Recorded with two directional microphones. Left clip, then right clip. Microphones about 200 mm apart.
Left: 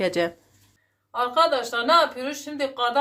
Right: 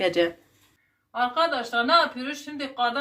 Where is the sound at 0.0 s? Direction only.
45° left (ahead or behind).